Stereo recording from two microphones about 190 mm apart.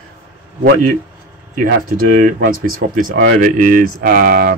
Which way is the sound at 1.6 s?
45° right (ahead or behind).